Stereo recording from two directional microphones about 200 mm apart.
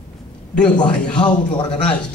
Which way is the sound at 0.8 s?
5° left (ahead or behind).